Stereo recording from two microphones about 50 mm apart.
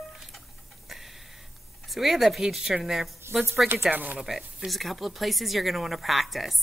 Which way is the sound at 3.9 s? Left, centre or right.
Right.